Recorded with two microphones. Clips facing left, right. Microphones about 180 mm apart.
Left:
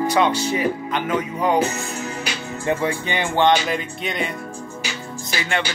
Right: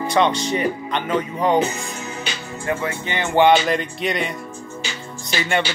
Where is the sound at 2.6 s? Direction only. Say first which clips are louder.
Left 2 dB; 25° left (ahead or behind).